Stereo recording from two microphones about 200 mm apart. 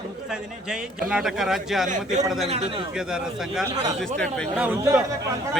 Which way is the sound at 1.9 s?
35° right (ahead or behind).